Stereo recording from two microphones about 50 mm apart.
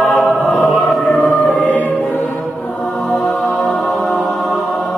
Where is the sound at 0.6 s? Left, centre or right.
Left.